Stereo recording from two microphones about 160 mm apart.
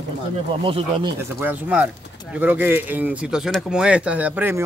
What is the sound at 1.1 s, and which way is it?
Speech, 10° right (ahead or behind).